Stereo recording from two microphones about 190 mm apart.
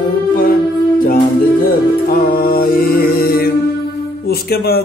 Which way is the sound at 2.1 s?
50° left (ahead or behind).